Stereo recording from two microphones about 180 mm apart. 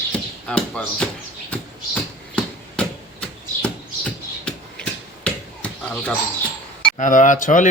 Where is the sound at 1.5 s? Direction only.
5° left (ahead or behind).